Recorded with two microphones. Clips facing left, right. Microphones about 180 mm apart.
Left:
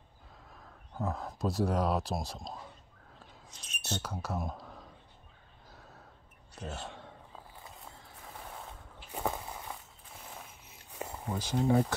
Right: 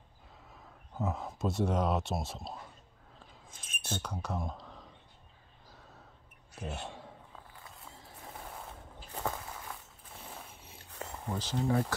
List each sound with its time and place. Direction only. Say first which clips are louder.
0.9 s speech: even; 5° right (ahead or behind)
3.4 s a sound: left 1 dB; 50° right (ahead or behind)
4.0 s speech: even; 5° left (ahead or behind)
6.6 s a man's voice: right 1 dB; 10° right (ahead or behind)
9.1 s walk: left 2 dB; 15° left (ahead or behind)
10.9 s a sound: left 3 dB; 15° left (ahead or behind)
11.2 s speech: left 3 dB; 10° left (ahead or behind)